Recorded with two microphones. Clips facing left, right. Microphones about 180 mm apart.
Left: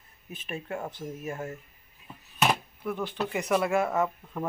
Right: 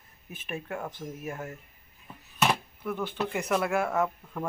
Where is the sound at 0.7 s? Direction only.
10° left (ahead or behind).